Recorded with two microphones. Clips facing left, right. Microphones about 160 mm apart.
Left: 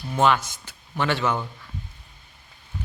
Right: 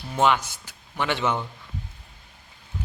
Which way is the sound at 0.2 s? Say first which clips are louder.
Left 1 dB; 15° right (ahead or behind).